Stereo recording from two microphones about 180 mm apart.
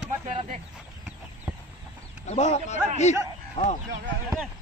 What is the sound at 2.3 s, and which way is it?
Speech, 40° left (ahead or behind).